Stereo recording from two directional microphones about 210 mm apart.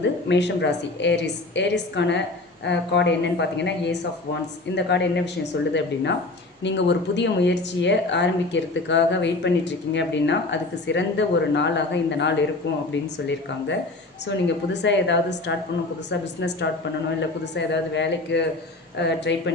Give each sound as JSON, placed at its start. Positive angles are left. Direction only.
{"t": 0.0, "sound": "speech", "side_deg": 55}